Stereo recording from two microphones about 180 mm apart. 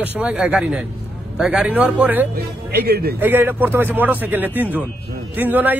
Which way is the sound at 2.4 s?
65° right (ahead or behind).